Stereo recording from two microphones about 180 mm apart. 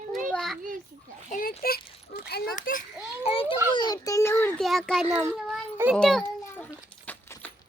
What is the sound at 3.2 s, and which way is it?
A child's voice, 30° left (ahead or behind).